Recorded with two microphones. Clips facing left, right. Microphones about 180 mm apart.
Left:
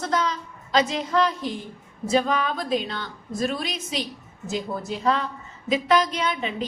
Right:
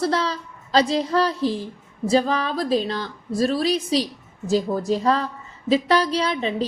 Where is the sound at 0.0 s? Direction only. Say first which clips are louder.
Right 3 dB; 35° right (ahead or behind).